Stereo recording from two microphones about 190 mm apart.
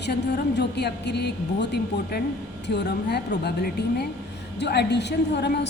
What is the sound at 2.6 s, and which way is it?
A woman's voice, 65° left (ahead or behind).